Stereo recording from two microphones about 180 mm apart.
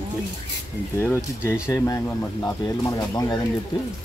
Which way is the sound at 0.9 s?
15° left (ahead or behind).